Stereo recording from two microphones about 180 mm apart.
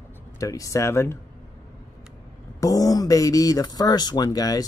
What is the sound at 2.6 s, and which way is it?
Speech, 20° left (ahead or behind).